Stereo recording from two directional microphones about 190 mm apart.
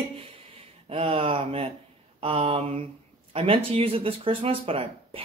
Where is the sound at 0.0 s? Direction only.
30° right (ahead or behind).